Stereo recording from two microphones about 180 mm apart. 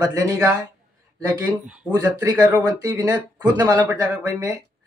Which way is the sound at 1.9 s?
20° right (ahead or behind).